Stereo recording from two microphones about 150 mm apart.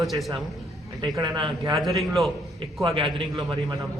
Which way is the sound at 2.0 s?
Centre (ahead or behind).